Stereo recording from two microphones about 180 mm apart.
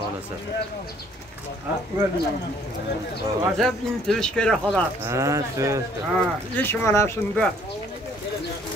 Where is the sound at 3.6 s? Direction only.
Centre (ahead or behind).